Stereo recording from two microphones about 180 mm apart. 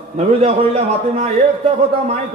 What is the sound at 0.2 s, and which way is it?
A man's voice, 35° right (ahead or behind).